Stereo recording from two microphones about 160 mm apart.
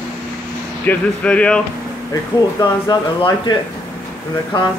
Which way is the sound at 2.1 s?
25° left (ahead or behind).